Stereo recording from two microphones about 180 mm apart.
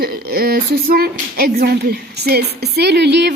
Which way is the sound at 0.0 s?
55° right (ahead or behind).